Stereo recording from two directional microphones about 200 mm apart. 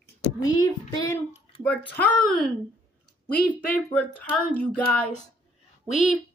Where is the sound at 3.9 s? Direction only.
5° left (ahead or behind).